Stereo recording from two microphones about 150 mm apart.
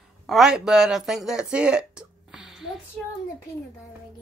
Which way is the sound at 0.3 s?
5° right (ahead or behind).